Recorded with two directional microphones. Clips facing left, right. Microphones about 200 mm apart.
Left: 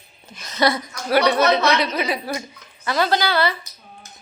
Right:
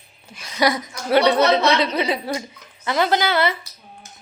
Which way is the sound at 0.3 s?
10° right (ahead or behind).